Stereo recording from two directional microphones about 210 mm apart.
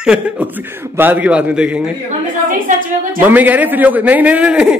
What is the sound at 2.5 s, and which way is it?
Speech, 40° right (ahead or behind).